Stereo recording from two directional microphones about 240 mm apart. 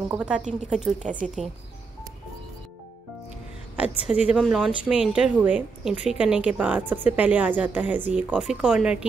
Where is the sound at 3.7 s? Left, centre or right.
Centre.